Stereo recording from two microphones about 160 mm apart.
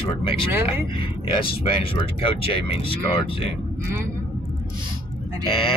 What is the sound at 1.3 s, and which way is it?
Speech, 35° left (ahead or behind).